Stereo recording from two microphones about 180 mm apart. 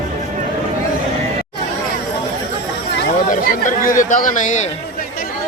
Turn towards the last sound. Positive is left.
turn(degrees=45)  # may be behind; listen again after turning